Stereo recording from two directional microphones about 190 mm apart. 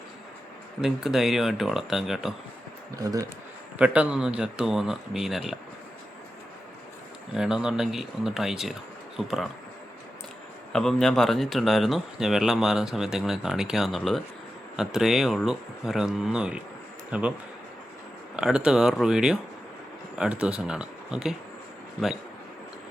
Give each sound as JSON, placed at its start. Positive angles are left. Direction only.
{"t": 0.8, "sound": "speech", "side_deg": 0}
{"t": 2.9, "sound": "speech", "side_deg": -20}
{"t": 3.8, "sound": "speech", "side_deg": -5}
{"t": 7.3, "sound": "speech", "side_deg": -5}
{"t": 10.7, "sound": "speech", "side_deg": 5}
{"t": 18.3, "sound": "speech", "side_deg": -5}